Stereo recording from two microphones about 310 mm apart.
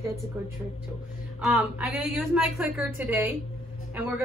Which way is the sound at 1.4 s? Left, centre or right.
Centre.